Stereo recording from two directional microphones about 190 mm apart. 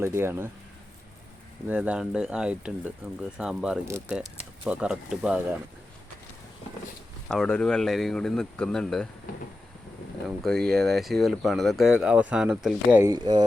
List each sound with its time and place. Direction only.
0.0 s speech: 10° right (ahead or behind)
1.7 s speech: 5° right (ahead or behind)
7.3 s speech: 5° left (ahead or behind)
10.2 s speech: centre (ahead or behind)
13.1 s speech: 25° right (ahead or behind)